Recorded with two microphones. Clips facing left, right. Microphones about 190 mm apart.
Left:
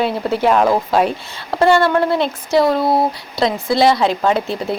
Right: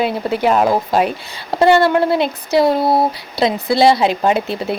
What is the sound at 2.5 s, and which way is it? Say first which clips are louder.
Speech: even; 25° right (ahead or behind).